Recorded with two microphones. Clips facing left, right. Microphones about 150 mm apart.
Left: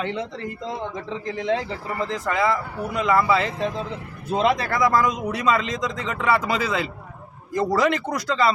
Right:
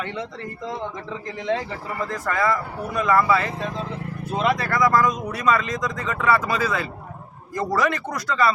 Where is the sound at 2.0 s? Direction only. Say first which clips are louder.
Left 1 dB; 20° left (ahead or behind).